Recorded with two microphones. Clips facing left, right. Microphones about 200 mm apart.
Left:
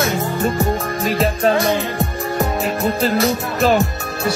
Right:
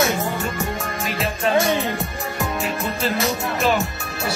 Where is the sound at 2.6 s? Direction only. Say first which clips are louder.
Left 6 dB; 40° left (ahead or behind).